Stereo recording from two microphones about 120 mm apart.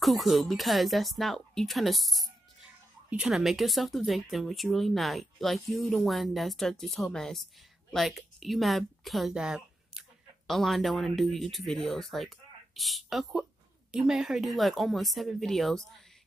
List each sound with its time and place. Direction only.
0.0 s a woman's voice: centre (ahead or behind)